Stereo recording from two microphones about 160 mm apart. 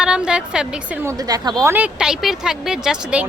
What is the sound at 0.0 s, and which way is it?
Speech, 5° right (ahead or behind).